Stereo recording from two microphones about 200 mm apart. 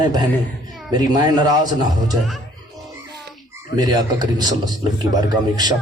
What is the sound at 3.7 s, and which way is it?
Speech, 20° right (ahead or behind).